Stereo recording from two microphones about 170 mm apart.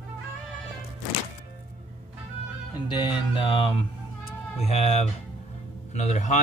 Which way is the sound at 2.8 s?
30° left (ahead or behind).